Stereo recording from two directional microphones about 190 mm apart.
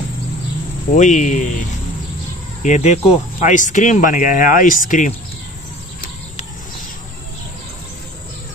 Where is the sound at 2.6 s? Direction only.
40° left (ahead or behind).